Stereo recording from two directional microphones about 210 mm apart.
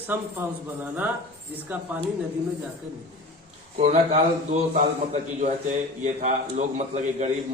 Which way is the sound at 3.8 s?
30° right (ahead or behind).